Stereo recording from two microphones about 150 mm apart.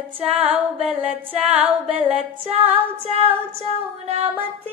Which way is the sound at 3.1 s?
40° right (ahead or behind).